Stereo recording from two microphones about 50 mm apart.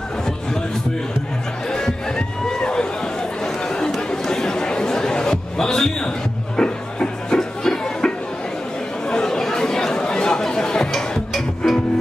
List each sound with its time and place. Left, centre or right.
1.7 s a sound: centre
4.1 s chatter: centre
9.1 s chatter: centre